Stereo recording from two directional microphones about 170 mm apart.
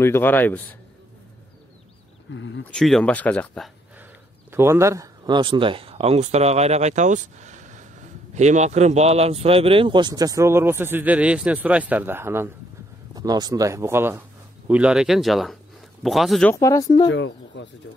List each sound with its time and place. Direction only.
0.0 s a man's voice: 15° left (ahead or behind)
2.3 s speech: 90° left
2.7 s speech: 5° left (ahead or behind)
4.5 s speech: 15° right (ahead or behind); by 16.5 s centre (ahead or behind)
16.5 s speech: 20° left (ahead or behind)
17.1 s speech: 90° left